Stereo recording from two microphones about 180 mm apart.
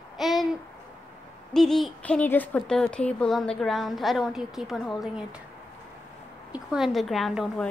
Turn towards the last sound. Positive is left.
turn(degrees=0)  # may be behind; listen again after turning